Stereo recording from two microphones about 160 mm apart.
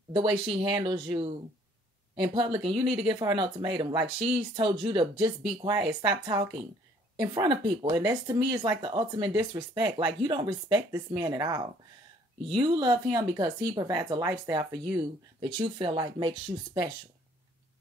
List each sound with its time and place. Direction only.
0.1 s speech: 30° right (ahead or behind)
2.3 s speech: 30° right (ahead or behind)